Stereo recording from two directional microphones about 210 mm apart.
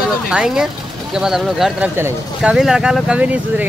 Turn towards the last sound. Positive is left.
turn(degrees=-5)  # may be behind; listen again after turning